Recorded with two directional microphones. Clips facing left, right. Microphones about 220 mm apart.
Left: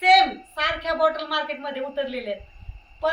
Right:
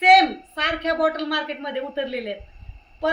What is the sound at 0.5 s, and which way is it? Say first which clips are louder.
A woman's voice: right 3 dB; 25° right (ahead or behind).